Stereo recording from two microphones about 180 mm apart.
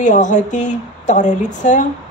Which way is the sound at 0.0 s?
45° left (ahead or behind).